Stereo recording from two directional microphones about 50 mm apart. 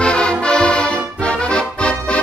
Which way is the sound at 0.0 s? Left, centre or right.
Centre.